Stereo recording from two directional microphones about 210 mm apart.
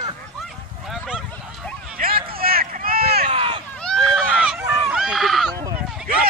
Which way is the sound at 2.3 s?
45° right (ahead or behind).